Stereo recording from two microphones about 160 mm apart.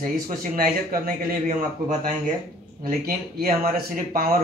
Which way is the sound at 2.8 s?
65° right (ahead or behind).